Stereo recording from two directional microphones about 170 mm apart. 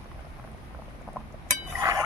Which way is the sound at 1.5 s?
20° right (ahead or behind).